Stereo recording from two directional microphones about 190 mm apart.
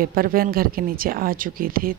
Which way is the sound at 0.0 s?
50° right (ahead or behind).